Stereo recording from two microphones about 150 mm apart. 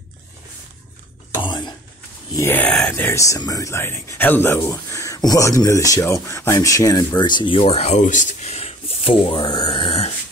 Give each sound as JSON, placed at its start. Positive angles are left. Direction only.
{"t": 2.3, "sound": "speech", "side_deg": 15}